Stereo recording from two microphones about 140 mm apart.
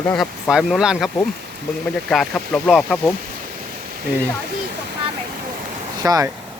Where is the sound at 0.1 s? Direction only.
Centre (ahead or behind).